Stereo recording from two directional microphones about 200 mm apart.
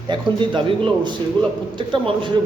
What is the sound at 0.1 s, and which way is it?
A man's voice, 25° right (ahead or behind).